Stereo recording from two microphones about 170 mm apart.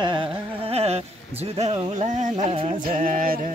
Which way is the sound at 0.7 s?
35° right (ahead or behind).